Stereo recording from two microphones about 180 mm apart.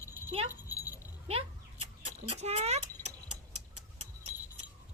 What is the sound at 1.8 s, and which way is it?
Vehicle, 40° right (ahead or behind).